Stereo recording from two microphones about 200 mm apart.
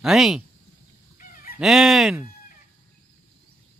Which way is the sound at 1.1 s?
45° left (ahead or behind).